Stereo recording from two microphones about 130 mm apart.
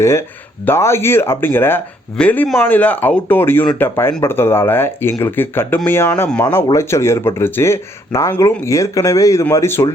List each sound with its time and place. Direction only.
0.0 s speech: 20° left (ahead or behind)